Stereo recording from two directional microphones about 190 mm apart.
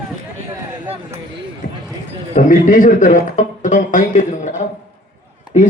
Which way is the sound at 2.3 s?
45° left (ahead or behind).